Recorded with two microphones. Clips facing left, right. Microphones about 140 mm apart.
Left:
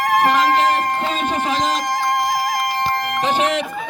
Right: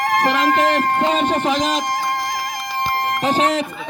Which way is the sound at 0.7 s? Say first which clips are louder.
Right 3 dB; 85° right.